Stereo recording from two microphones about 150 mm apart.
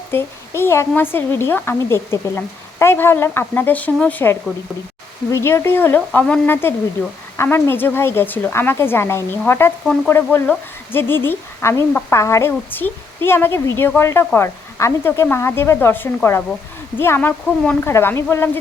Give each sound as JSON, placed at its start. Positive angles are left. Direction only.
{"t": 0.1, "sound": "a woman's voice", "side_deg": 15}